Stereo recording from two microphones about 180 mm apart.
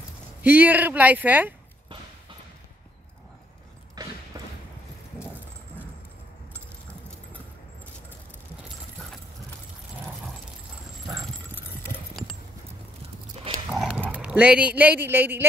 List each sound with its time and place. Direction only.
0.4 s speech: 10° right (ahead or behind)
4.0 s a sound: 20° right (ahead or behind)
13.7 s dog: 5° right (ahead or behind)